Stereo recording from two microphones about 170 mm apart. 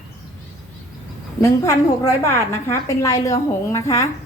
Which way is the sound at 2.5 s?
20° left (ahead or behind).